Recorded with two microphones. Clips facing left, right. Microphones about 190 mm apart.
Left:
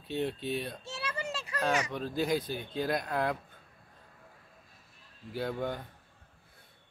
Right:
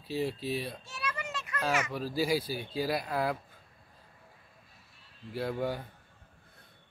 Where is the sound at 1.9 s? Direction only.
5° right (ahead or behind).